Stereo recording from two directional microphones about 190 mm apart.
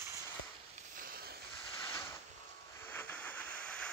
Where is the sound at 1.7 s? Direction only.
15° left (ahead or behind).